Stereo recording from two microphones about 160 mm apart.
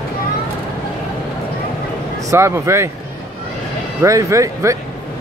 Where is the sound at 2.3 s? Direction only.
20° right (ahead or behind).